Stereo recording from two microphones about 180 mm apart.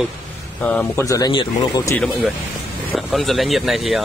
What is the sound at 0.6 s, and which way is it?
Speech, 10° left (ahead or behind).